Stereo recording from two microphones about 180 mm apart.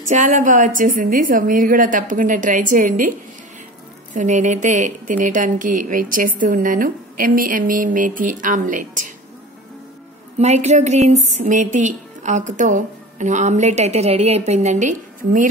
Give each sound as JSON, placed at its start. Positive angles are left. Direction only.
{"t": 0.1, "sound": "speech", "side_deg": -45}
{"t": 10.4, "sound": "a woman's voice", "side_deg": -40}